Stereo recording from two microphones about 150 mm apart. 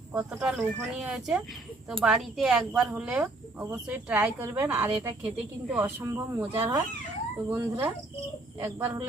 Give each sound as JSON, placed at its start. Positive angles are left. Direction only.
{"t": 0.1, "sound": "speech", "side_deg": -15}